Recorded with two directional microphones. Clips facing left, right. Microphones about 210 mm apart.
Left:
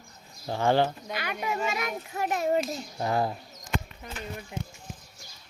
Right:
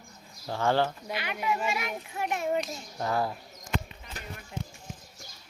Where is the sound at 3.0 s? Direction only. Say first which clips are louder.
Left 2 dB; 20° left (ahead or behind).